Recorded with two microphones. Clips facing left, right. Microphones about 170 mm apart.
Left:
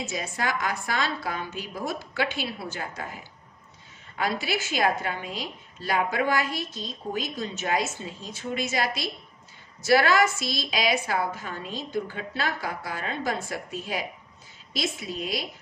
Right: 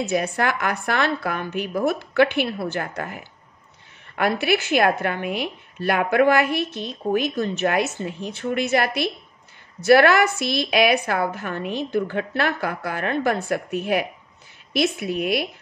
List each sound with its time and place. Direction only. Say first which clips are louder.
0.0 s a woman's voice: right 8 dB; 60° right (ahead or behind)